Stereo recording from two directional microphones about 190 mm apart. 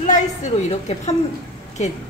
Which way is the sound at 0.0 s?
40° left (ahead or behind).